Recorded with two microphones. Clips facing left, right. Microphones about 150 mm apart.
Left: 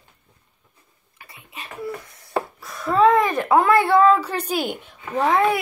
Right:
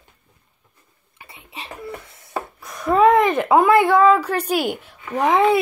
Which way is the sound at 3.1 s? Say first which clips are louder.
Right 2 dB; 20° right (ahead or behind).